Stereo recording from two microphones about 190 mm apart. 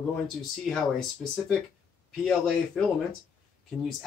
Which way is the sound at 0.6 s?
5° left (ahead or behind).